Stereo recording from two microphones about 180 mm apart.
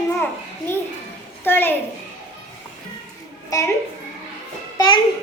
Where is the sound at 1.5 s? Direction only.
10° left (ahead or behind).